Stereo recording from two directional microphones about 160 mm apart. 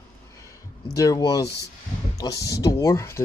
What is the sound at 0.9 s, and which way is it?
Speech, 20° left (ahead or behind).